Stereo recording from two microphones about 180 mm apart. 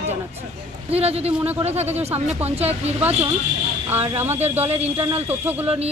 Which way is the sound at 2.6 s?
35° right (ahead or behind).